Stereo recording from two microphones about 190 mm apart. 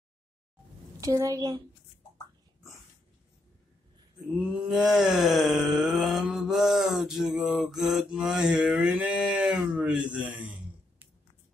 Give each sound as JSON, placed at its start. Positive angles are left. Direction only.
{"t": 1.0, "sound": "a woman's voice", "side_deg": -15}
{"t": 4.6, "sound": "groan", "side_deg": -5}